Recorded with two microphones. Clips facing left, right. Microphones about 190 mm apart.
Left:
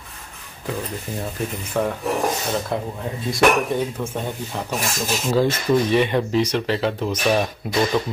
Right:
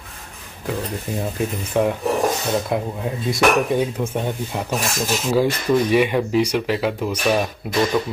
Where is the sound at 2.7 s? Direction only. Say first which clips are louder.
Right 3 dB; 15° right (ahead or behind).